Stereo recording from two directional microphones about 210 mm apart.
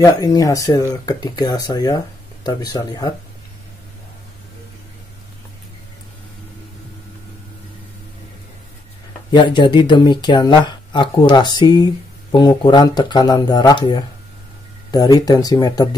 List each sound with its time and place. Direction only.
0.0 s speech: 15° left (ahead or behind)
9.3 s speech: 20° left (ahead or behind)